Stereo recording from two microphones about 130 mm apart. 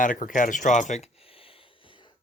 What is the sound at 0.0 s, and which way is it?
Speech, 90° left.